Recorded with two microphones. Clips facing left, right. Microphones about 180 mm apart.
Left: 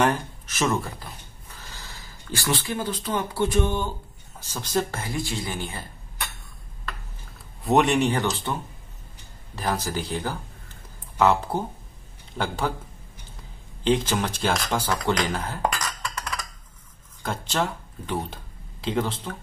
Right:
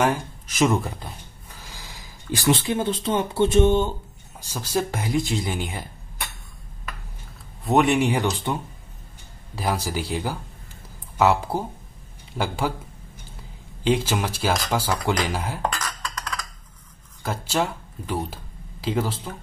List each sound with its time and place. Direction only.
0.0 s speech: 15° right (ahead or behind)
4.4 s speech: 10° right (ahead or behind)
7.6 s speech: centre (ahead or behind)
9.6 s speech: 10° right (ahead or behind)
13.8 s speech: 10° right (ahead or behind)
17.2 s speech: 5° right (ahead or behind)